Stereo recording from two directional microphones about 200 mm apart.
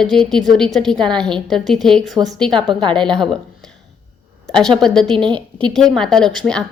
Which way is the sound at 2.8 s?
25° right (ahead or behind).